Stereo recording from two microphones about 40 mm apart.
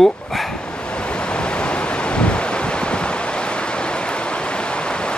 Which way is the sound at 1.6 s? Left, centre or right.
Left.